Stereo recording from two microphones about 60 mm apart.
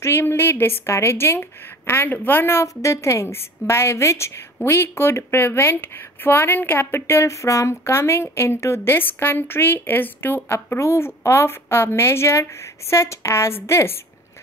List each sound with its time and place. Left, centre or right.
0.0 s a woman's voice: left
2.6 s a woman's voice: left
10.8 s a woman's voice: left